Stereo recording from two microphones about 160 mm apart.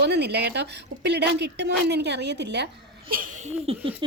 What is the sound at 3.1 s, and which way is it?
Speech, 60° right (ahead or behind).